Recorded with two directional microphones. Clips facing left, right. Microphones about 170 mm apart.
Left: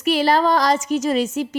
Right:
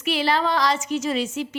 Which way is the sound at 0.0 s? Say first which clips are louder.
Left 5 dB; 40° left (ahead or behind).